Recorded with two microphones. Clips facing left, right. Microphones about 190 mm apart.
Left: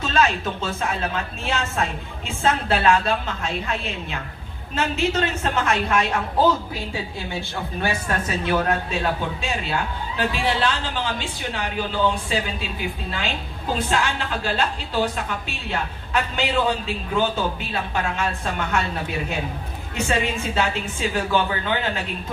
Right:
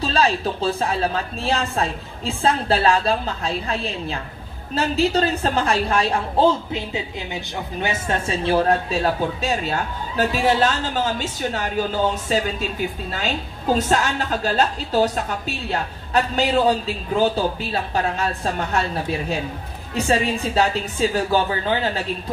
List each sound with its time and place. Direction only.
0.0 s a woman's voice: 35° right (ahead or behind)